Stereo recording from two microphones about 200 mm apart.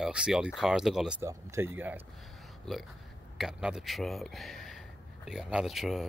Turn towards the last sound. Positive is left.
turn(degrees=0)  # may be behind; listen again after turning